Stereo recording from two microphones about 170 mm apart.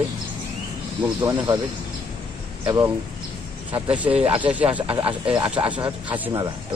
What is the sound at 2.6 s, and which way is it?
Speech, 20° right (ahead or behind).